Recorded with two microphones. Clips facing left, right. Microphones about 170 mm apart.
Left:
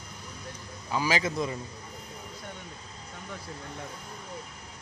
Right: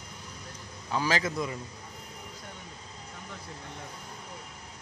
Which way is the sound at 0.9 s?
10° left (ahead or behind).